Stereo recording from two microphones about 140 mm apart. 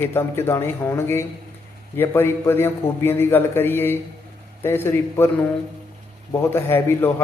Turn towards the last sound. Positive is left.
turn(degrees=15)  # may be behind; listen again after turning